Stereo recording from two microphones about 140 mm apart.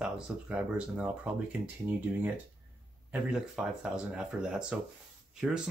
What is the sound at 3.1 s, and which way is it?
Speech, 5° right (ahead or behind).